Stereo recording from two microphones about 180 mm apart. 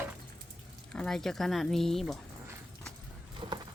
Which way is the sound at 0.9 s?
5° left (ahead or behind).